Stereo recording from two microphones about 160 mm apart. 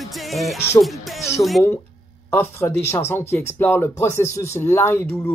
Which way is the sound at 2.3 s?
15° left (ahead or behind).